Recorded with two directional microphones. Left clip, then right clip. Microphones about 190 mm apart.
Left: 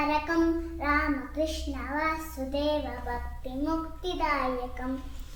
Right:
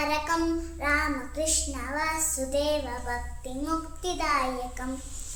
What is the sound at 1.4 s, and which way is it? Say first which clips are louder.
A child's voice: right 1 dB; 15° right (ahead or behind).